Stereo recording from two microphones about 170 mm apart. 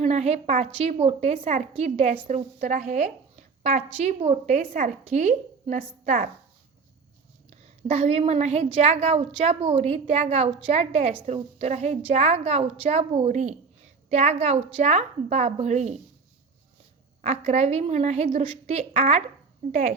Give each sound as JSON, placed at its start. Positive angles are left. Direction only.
{"t": 0.0, "sound": "a woman's voice", "side_deg": -40}
{"t": 7.9, "sound": "a woman's voice", "side_deg": -35}
{"t": 17.2, "sound": "a woman's voice", "side_deg": -40}